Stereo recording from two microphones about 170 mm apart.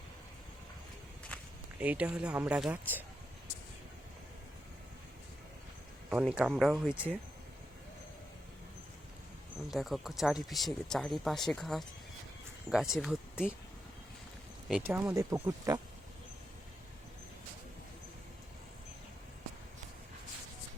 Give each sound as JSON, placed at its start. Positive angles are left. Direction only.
{"t": 1.3, "sound": "walk", "side_deg": 10}
{"t": 1.8, "sound": "speech", "side_deg": -10}
{"t": 6.1, "sound": "speech", "side_deg": -5}
{"t": 9.7, "sound": "speech", "side_deg": 0}
{"t": 14.7, "sound": "speech", "side_deg": -10}